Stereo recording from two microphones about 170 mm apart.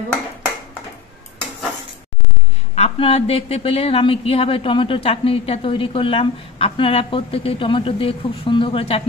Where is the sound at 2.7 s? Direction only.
35° left (ahead or behind).